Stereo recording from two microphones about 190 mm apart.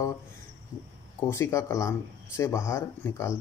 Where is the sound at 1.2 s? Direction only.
15° left (ahead or behind).